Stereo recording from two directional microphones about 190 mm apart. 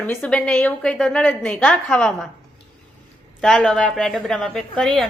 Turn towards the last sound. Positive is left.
turn(degrees=0)  # may be behind; listen again after turning